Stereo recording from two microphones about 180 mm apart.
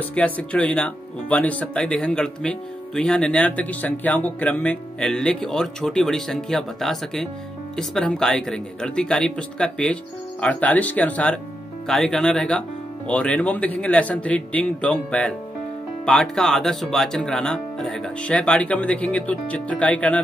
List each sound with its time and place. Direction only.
0.0 s speech: 10° left (ahead or behind)